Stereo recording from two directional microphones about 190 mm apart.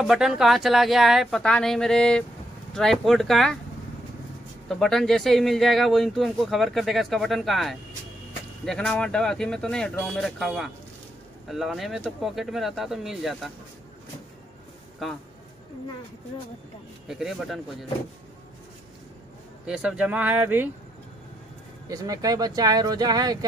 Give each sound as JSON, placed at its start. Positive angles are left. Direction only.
{"t": 0.0, "sound": "speech", "side_deg": -5}
{"t": 4.6, "sound": "speech", "side_deg": 0}
{"t": 15.0, "sound": "speech", "side_deg": 0}
{"t": 17.1, "sound": "speech", "side_deg": 0}
{"t": 19.6, "sound": "speech", "side_deg": -5}
{"t": 21.8, "sound": "speech", "side_deg": -20}